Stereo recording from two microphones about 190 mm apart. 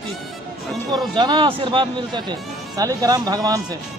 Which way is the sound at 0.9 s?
25° right (ahead or behind).